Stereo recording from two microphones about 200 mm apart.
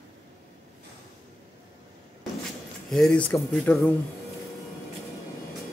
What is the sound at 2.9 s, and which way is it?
Speech, centre (ahead or behind).